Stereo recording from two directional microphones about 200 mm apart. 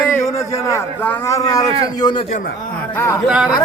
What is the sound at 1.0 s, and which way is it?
A man's voice, 10° left (ahead or behind).